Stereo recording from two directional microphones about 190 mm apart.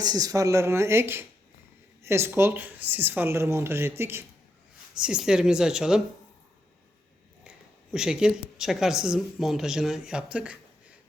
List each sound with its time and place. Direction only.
0.0 s speech: 20° right (ahead or behind); by 6.0 s 5° right (ahead or behind)
7.4 s speech: 5° right (ahead or behind)
10.3 s a sound: 5° right (ahead or behind)